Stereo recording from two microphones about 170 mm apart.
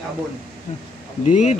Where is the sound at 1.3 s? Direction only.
45° left (ahead or behind).